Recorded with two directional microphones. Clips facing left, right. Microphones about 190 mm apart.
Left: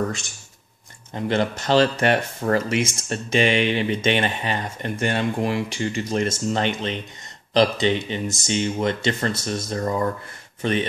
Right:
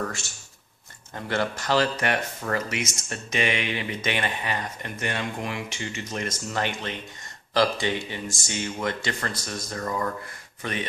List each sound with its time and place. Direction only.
1.1 s speech: 20° left (ahead or behind)